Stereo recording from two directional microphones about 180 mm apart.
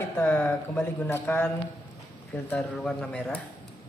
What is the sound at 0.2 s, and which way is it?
Speech, 10° left (ahead or behind).